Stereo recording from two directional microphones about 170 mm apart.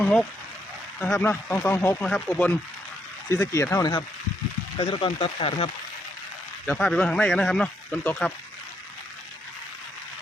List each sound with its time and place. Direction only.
0.0 s speech: 5° left (ahead or behind)
4.8 s speech: 30° left (ahead or behind)
6.7 s speech: 5° left (ahead or behind)